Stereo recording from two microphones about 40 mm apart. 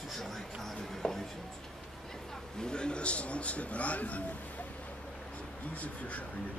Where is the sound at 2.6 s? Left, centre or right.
Left.